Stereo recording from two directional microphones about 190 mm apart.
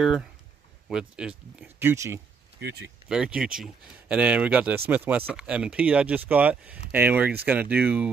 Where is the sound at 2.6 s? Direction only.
60° right (ahead or behind).